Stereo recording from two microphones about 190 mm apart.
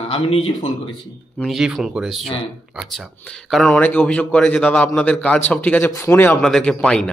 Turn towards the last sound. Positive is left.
turn(degrees=5)  # may be behind; listen again after turning